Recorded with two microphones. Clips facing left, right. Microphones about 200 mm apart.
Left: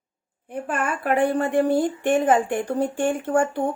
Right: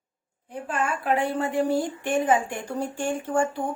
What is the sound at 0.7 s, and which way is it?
Speech, 60° left (ahead or behind).